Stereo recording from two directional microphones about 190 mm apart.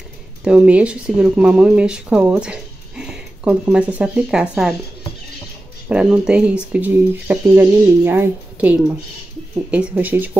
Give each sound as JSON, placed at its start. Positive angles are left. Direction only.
{"t": 0.4, "sound": "speech", "side_deg": -5}
{"t": 5.9, "sound": "speech", "side_deg": -5}